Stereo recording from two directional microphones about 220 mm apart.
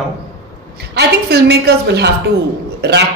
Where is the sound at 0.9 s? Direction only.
50° right (ahead or behind).